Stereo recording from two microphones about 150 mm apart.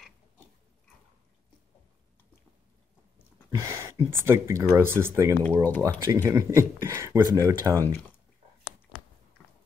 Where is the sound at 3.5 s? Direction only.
20° right (ahead or behind).